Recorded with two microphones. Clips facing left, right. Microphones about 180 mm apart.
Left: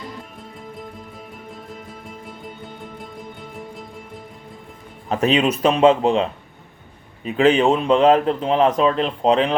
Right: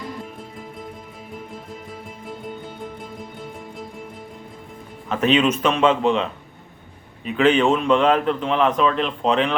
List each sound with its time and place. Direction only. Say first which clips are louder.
5.0 s a man's voice: even; 35° left (ahead or behind)
7.3 s a man's voice: left 1 dB; 30° left (ahead or behind)